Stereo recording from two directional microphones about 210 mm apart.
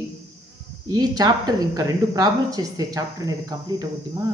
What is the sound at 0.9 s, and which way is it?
Speech, 20° right (ahead or behind).